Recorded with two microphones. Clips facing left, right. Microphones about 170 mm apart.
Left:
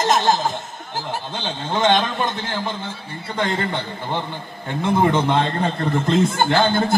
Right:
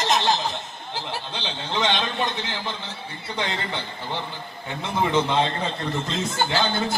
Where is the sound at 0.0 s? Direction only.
45° left (ahead or behind).